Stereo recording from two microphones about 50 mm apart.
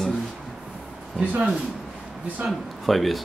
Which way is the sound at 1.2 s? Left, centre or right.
Right.